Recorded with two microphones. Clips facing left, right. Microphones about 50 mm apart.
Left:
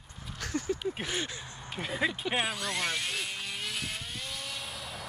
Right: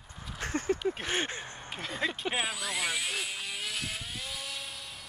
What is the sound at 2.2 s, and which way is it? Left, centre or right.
Helicopter, centre.